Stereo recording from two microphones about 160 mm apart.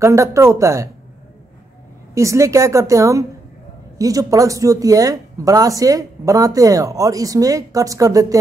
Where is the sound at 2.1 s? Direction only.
20° right (ahead or behind).